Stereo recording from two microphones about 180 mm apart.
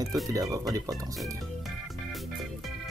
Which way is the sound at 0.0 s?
20° right (ahead or behind).